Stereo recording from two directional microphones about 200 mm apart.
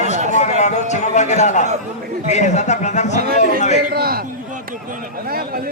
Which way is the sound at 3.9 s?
50° right (ahead or behind).